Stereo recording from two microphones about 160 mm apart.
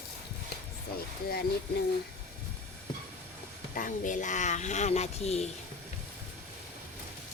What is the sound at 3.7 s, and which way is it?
Speech, 55° left (ahead or behind).